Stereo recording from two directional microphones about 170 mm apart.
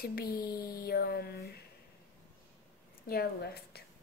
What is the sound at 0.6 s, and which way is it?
Mantra, 65° left (ahead or behind).